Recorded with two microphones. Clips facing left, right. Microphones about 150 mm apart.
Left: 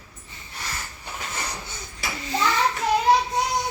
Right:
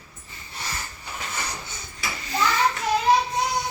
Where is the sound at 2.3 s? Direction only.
25° left (ahead or behind).